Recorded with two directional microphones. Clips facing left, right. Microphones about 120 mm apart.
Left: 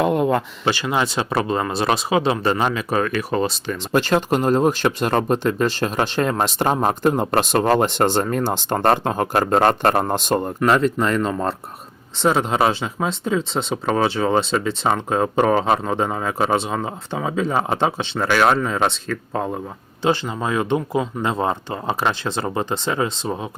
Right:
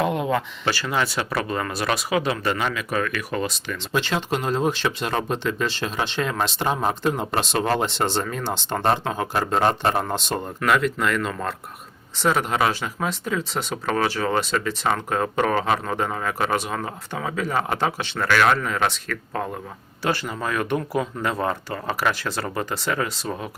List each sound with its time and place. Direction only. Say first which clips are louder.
0.0 s a sound: left 4 dB; 45° left (ahead or behind)
0.6 s speech: left 3 dB; 20° left (ahead or behind)
3.9 s speech: left 6 dB; 50° left (ahead or behind)
10.7 s speech: left 3 dB; 30° left (ahead or behind)